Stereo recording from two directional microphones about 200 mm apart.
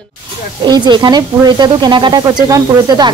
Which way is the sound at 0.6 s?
20° right (ahead or behind).